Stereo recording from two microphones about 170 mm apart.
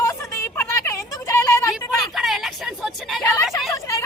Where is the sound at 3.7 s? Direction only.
20° left (ahead or behind).